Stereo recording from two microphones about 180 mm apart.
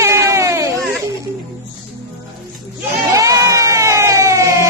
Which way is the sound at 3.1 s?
20° right (ahead or behind).